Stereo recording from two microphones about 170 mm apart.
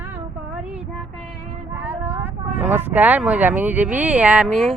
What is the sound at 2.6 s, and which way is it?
Speech, 10° right (ahead or behind).